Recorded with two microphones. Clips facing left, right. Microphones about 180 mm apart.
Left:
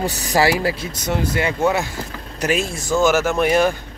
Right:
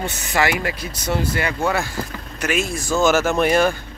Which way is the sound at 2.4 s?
35° left (ahead or behind).